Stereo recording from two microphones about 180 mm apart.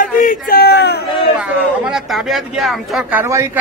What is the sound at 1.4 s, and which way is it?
Speech, 5° right (ahead or behind).